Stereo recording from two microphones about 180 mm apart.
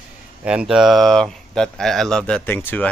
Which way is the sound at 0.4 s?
5° right (ahead or behind).